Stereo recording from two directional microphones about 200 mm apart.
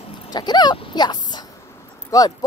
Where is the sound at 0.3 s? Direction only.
20° left (ahead or behind).